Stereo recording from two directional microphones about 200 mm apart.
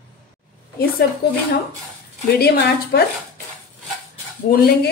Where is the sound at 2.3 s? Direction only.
50° left (ahead or behind).